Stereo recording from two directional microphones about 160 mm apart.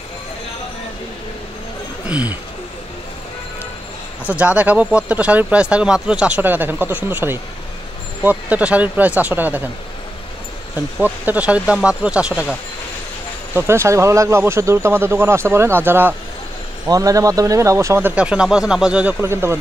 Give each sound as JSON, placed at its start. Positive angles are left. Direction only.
{"t": 2.0, "sound": "speech", "side_deg": -10}
{"t": 4.2, "sound": "speech", "side_deg": -10}
{"t": 11.0, "sound": "speech", "side_deg": -10}
{"t": 13.6, "sound": "speech", "side_deg": -15}